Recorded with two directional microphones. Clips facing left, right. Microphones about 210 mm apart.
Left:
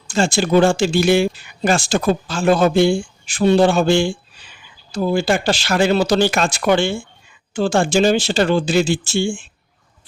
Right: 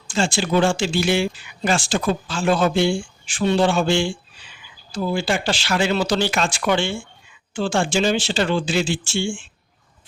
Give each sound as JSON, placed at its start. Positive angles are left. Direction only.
{"t": 0.1, "sound": "speech", "side_deg": 40}